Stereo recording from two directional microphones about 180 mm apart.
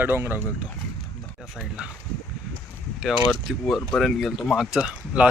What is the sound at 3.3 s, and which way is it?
Speech, centre (ahead or behind).